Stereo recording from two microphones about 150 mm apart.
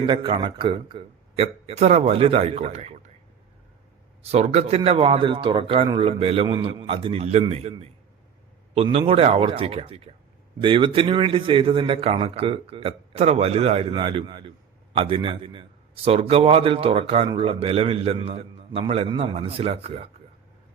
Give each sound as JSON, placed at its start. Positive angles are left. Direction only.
{"t": 0.0, "sound": "a man's voice", "side_deg": -35}
{"t": 4.2, "sound": "a man's voice", "side_deg": -45}